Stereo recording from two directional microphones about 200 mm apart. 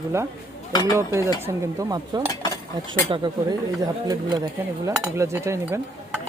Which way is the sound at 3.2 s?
20° right (ahead or behind).